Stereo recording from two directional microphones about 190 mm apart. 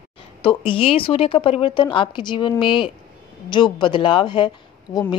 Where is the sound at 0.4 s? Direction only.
25° left (ahead or behind).